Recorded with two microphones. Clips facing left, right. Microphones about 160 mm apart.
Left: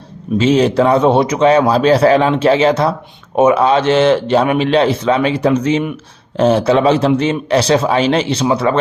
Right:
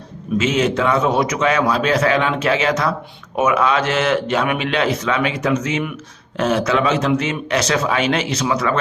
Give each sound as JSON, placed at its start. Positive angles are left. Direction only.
{"t": 0.3, "sound": "speech", "side_deg": 35}